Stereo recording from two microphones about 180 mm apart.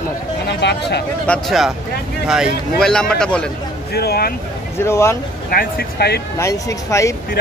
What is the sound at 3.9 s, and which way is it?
Speech, 60° left (ahead or behind).